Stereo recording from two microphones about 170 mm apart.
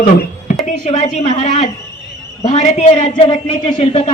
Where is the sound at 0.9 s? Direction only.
40° left (ahead or behind).